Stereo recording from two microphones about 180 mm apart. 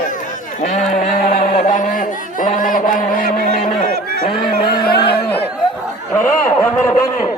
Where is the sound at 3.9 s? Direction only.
65° right (ahead or behind).